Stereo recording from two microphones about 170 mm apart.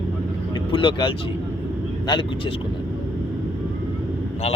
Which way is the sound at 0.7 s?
30° left (ahead or behind).